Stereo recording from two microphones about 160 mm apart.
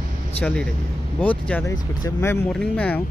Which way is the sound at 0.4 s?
10° left (ahead or behind).